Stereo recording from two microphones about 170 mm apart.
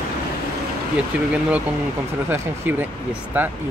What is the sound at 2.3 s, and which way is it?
Speech, 10° right (ahead or behind).